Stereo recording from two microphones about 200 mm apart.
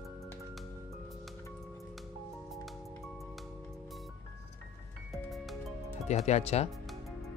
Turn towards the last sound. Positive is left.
turn(degrees=30)  # may be behind; listen again after turning